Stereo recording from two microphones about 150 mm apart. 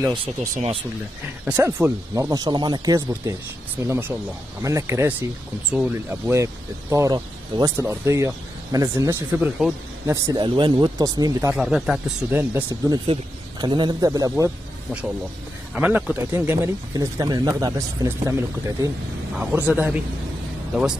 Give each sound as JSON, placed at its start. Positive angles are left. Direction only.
{"t": 0.1, "sound": "speech", "side_deg": -40}
{"t": 1.5, "sound": "speech", "side_deg": -20}
{"t": 5.7, "sound": "speech", "side_deg": -5}
{"t": 6.3, "sound": "speech", "side_deg": -20}
{"t": 10.2, "sound": "speech", "side_deg": -30}
{"t": 11.5, "sound": "speech", "side_deg": 0}
{"t": 12.4, "sound": "speech", "side_deg": -15}
{"t": 12.9, "sound": "speech", "side_deg": -30}
{"t": 14.3, "sound": "speech", "side_deg": -10}